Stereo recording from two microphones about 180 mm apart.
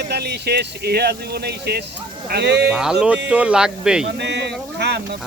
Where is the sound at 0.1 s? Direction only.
65° right (ahead or behind).